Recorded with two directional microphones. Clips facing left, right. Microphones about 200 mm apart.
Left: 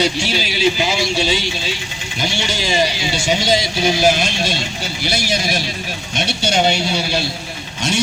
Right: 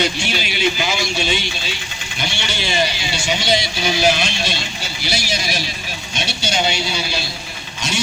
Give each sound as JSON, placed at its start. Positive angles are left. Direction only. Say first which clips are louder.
{"t": 0.0, "sound": "speech", "louder": "left 3 dB", "side_deg": 35}
{"t": 2.5, "sound": "speech", "louder": "left 2 dB", "side_deg": 40}